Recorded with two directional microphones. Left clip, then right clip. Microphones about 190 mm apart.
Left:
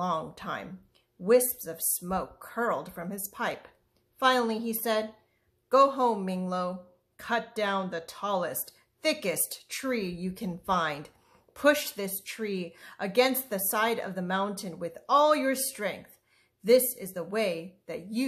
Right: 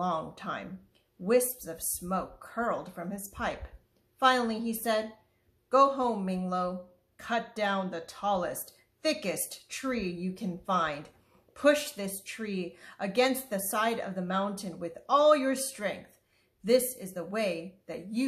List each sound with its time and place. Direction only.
0.0 s speech: 35° left (ahead or behind)